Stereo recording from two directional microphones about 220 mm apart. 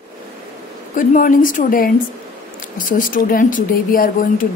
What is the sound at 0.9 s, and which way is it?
Speech, 40° left (ahead or behind).